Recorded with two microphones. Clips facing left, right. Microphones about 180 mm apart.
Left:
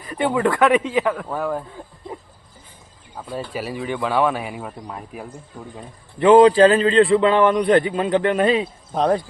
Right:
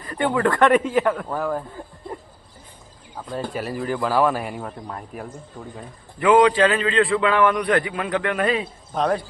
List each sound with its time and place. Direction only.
0.1 s speech: 10° left (ahead or behind)
3.2 s speech: 5° left (ahead or behind)
6.1 s a man's voice: 30° left (ahead or behind)